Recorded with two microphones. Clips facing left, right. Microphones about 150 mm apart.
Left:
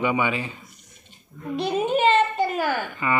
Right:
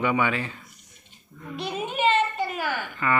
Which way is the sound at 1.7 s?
35° left (ahead or behind).